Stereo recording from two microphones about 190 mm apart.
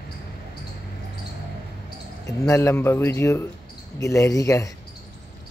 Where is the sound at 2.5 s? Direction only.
15° left (ahead or behind).